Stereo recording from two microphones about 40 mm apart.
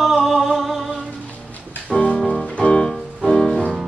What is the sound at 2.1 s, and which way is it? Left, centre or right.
Music, centre.